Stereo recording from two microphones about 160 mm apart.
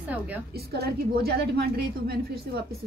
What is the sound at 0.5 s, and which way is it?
A woman's voice, 85° right.